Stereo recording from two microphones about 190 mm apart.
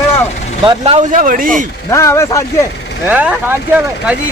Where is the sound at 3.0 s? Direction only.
5° right (ahead or behind).